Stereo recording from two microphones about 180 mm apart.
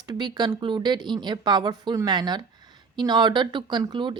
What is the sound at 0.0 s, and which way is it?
A woman's voice, 25° right (ahead or behind).